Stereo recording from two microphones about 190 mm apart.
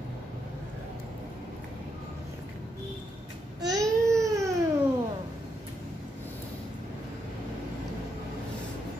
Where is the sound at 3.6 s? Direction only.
15° right (ahead or behind).